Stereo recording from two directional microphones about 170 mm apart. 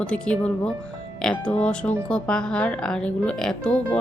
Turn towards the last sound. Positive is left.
turn(degrees=5)  # may be behind; listen again after turning